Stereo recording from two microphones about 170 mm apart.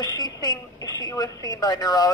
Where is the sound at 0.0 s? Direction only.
25° left (ahead or behind).